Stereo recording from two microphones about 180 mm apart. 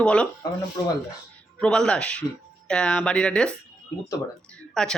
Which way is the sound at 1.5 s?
5° left (ahead or behind).